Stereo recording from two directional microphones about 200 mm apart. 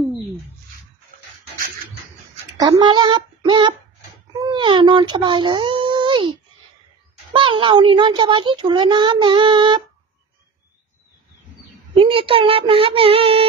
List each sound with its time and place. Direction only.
2.7 s child singing: 20° right (ahead or behind)
4.4 s a sound: 25° right (ahead or behind)
7.3 s a child's voice: 25° right (ahead or behind)
12.0 s a child's voice: 25° right (ahead or behind)